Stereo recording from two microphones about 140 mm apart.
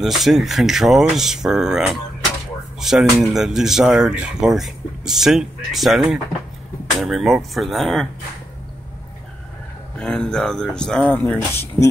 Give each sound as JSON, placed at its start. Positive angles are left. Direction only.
{"t": 0.0, "sound": "speech", "side_deg": 0}
{"t": 9.9, "sound": "speech", "side_deg": 5}